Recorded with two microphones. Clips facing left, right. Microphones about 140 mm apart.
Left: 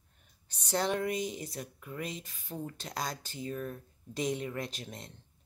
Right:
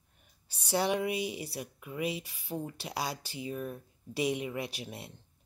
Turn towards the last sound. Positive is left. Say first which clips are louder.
# right 1 dB
turn(degrees=-10)  # may be behind; listen again after turning